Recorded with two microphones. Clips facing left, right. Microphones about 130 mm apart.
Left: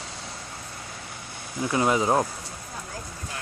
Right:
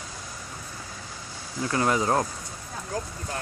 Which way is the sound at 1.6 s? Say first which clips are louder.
Left 2 dB; 15° left (ahead or behind).